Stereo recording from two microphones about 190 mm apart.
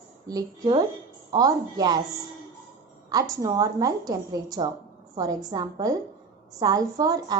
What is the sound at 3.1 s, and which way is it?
A woman's voice, 20° right (ahead or behind).